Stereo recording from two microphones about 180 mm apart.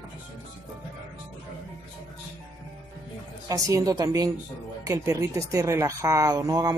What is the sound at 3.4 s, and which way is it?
A woman's voice, 20° right (ahead or behind).